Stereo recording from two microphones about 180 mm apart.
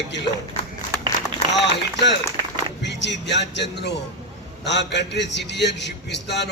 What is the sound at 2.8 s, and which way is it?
A man's voice, 75° left (ahead or behind).